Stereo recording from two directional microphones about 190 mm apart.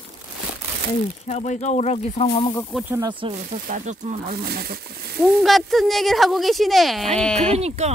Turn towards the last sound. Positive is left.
turn(degrees=-35)  # may be behind; listen again after turning